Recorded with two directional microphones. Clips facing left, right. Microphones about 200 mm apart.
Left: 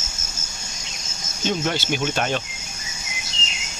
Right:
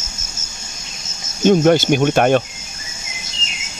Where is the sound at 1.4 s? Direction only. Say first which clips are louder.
Right 12 dB; 50° right (ahead or behind).